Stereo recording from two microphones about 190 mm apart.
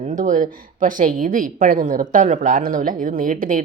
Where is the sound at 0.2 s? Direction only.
45° right (ahead or behind).